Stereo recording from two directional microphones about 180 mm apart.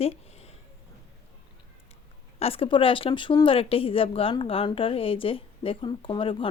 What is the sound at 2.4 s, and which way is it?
Speech, 30° left (ahead or behind).